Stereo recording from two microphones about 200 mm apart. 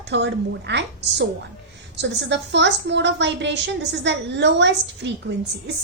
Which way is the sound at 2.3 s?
60° right (ahead or behind).